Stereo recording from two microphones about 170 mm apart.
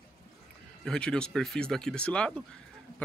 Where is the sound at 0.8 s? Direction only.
5° left (ahead or behind).